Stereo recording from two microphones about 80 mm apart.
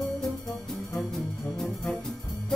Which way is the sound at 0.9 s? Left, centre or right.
Centre.